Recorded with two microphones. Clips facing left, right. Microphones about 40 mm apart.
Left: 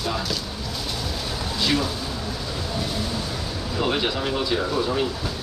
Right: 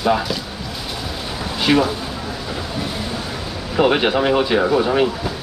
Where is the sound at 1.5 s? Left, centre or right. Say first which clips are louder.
Right 8 dB; right.